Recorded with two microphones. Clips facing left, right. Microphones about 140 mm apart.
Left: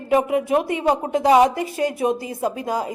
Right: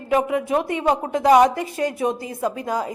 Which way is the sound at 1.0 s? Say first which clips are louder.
Right 1 dB; 30° left (ahead or behind).